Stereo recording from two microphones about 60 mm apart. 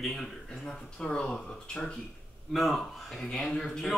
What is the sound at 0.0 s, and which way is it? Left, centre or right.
Speech, centre.